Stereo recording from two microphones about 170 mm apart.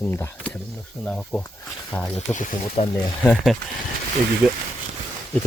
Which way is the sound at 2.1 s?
50° left (ahead or behind).